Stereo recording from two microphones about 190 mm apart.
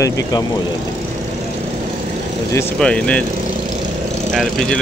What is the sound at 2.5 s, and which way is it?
Speech, 10° left (ahead or behind).